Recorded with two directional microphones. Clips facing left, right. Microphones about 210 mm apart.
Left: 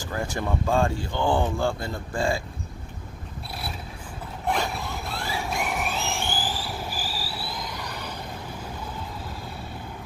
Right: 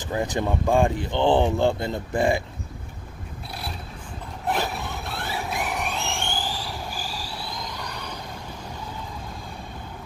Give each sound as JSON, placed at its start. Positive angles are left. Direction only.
{"t": 0.0, "sound": "speech", "side_deg": -20}
{"t": 4.5, "sound": "a sound", "side_deg": 0}
{"t": 6.9, "sound": "train", "side_deg": 5}